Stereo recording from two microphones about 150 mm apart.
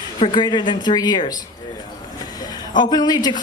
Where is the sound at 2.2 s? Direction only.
25° left (ahead or behind).